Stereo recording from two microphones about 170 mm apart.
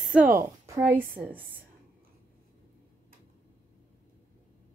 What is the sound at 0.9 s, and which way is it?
Speech, 10° right (ahead or behind).